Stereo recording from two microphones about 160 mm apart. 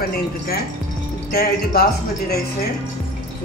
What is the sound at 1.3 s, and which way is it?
Speech, 70° left (ahead or behind).